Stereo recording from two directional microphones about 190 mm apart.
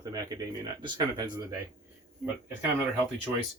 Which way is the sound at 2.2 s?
Centre (ahead or behind).